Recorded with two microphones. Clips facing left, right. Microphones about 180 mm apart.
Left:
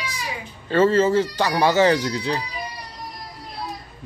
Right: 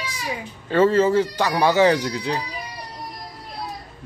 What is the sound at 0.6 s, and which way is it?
Speech, 15° right (ahead or behind).